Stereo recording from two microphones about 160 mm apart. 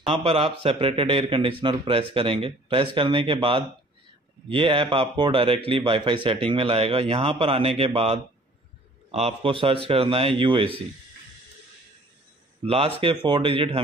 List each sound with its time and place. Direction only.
0.0 s speech: 35° right (ahead or behind)
12.6 s speech: 35° right (ahead or behind)